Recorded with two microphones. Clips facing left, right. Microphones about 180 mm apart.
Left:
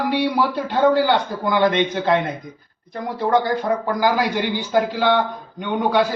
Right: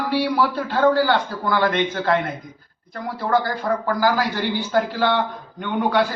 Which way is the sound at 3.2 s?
20° left (ahead or behind).